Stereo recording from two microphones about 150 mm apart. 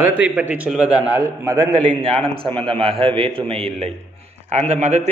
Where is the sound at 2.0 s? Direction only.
40° right (ahead or behind).